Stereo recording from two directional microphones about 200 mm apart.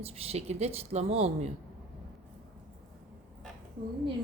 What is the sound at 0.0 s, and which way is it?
Speech, 30° right (ahead or behind).